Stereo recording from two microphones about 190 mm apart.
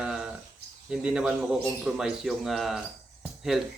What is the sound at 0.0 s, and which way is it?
Cricket, 5° right (ahead or behind).